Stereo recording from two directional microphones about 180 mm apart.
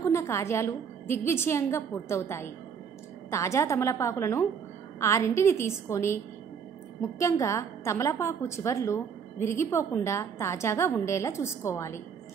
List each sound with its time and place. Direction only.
0.0 s a woman's voice: 15° left (ahead or behind)
7.2 s a woman's voice: 15° left (ahead or behind)